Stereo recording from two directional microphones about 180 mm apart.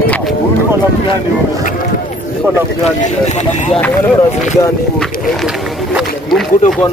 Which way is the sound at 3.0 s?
40° left (ahead or behind).